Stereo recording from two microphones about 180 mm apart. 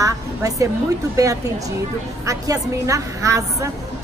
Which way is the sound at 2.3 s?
20° right (ahead or behind).